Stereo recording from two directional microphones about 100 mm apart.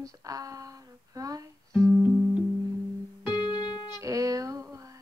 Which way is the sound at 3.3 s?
45° left (ahead or behind).